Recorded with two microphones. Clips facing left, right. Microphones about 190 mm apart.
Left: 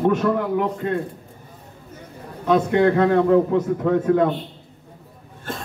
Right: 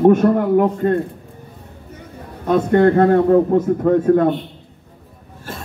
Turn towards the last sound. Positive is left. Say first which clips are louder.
# right 4 dB
turn(degrees=-50)  # may be behind; listen again after turning